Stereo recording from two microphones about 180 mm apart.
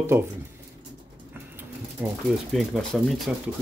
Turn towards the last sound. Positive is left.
turn(degrees=0)  # may be behind; listen again after turning